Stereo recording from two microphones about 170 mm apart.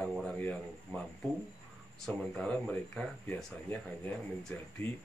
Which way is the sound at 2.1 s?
5° left (ahead or behind).